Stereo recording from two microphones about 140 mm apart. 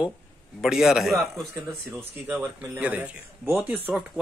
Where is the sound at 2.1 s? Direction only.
15° right (ahead or behind).